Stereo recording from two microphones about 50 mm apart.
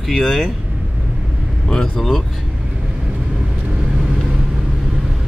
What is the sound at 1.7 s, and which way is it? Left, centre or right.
Speech, centre.